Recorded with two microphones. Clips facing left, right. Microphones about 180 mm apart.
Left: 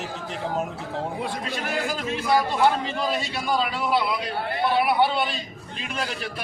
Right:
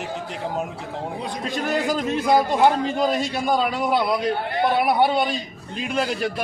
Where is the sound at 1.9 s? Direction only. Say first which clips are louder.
Right 4 dB; 45° right (ahead or behind).